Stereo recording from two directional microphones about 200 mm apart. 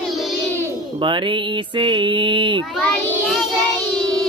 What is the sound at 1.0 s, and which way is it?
Mantra, 25° right (ahead or behind).